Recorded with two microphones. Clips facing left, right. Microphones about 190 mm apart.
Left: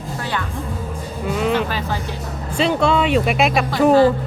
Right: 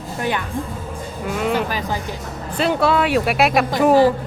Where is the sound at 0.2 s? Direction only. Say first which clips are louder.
Right 4 dB; 15° right (ahead or behind).